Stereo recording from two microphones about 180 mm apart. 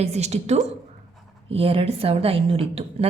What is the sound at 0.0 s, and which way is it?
A woman's voice, 35° right (ahead or behind).